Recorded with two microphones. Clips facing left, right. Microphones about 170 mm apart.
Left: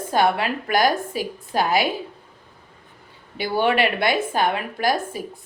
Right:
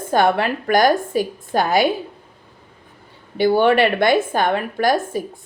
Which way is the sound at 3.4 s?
50° right (ahead or behind).